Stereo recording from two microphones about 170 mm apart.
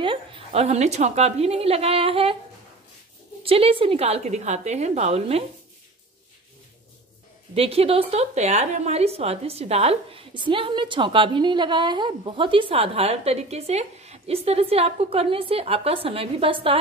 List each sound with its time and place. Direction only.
0.0 s a woman's voice: 30° right (ahead or behind)
3.4 s a woman's voice: 35° right (ahead or behind)
7.5 s a woman's voice: 35° right (ahead or behind)